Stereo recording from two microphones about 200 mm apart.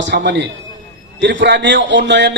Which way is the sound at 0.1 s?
55° right (ahead or behind).